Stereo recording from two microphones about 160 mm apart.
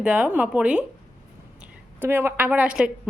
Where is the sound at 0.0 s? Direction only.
10° right (ahead or behind).